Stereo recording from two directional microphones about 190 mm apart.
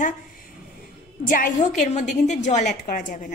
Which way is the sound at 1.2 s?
45° left (ahead or behind).